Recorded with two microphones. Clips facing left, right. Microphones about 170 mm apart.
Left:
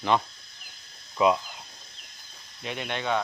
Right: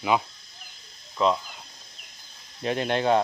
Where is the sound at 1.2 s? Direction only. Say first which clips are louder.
Left 1 dB; 10° left (ahead or behind).